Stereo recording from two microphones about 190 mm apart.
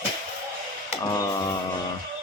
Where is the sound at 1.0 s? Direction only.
20° left (ahead or behind).